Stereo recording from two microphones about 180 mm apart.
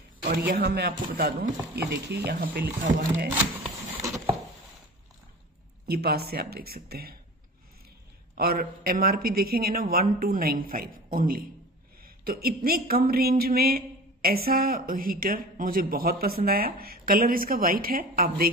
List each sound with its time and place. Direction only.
0.5 s speech: 60° right (ahead or behind)
2.8 s speech: 50° right (ahead or behind)
5.9 s speech: 60° right (ahead or behind)
8.4 s speech: 55° right (ahead or behind)